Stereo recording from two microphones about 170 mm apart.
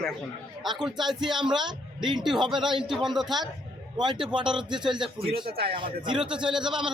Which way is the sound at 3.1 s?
Centre (ahead or behind).